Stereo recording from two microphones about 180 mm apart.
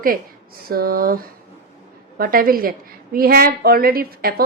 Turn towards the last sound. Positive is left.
turn(degrees=-55)  # may be behind; listen again after turning